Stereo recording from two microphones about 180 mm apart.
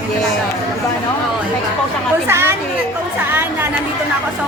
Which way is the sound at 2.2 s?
15° right (ahead or behind).